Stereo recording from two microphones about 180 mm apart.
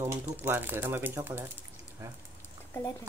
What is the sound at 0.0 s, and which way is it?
Speech, 15° right (ahead or behind).